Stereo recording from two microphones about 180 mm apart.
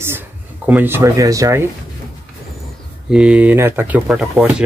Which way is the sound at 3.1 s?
5° right (ahead or behind).